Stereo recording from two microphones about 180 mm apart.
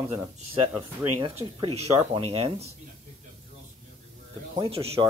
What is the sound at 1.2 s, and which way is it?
Speech, 30° right (ahead or behind).